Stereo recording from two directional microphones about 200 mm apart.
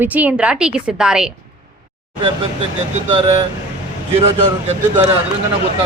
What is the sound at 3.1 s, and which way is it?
Speech, 25° right (ahead or behind).